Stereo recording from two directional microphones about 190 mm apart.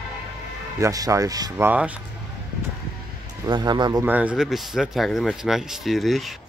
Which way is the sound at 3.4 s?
25° right (ahead or behind).